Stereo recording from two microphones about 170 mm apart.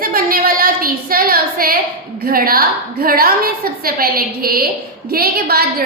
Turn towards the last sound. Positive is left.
turn(degrees=-60)  # may be behind; listen again after turning